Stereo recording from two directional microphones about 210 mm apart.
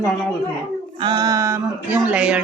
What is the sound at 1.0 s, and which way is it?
A woman's voice, 20° right (ahead or behind).